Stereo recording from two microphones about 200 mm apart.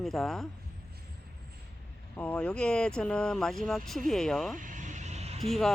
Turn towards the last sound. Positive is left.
turn(degrees=0)  # may be behind; listen again after turning